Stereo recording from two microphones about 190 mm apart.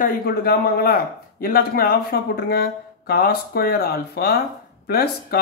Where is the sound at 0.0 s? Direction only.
55° left (ahead or behind).